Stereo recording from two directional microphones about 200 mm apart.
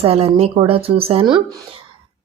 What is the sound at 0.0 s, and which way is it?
Speech, 30° right (ahead or behind).